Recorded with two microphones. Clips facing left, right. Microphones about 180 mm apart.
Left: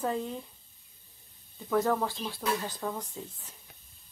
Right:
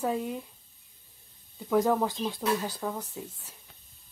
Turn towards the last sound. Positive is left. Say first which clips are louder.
# right 2 dB
turn(degrees=-10)  # may be behind; listen again after turning